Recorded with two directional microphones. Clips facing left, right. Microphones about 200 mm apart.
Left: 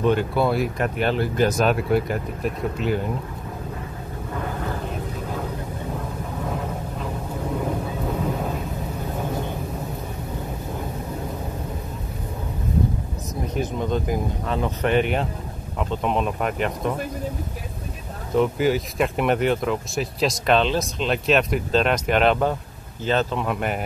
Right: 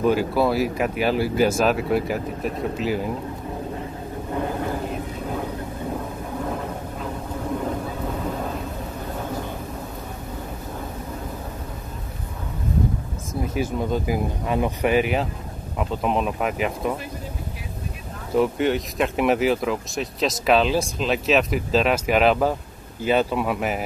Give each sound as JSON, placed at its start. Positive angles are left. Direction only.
{"t": 0.0, "sound": "speech", "side_deg": -5}
{"t": 13.6, "sound": "speech", "side_deg": -5}
{"t": 18.3, "sound": "speech", "side_deg": 0}